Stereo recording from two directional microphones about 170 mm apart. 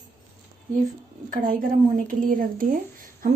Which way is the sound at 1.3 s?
55° right (ahead or behind).